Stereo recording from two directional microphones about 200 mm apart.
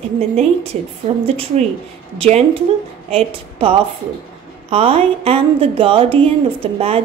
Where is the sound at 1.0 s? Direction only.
30° right (ahead or behind).